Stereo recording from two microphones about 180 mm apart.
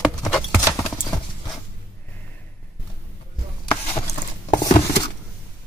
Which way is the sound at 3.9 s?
40° left (ahead or behind).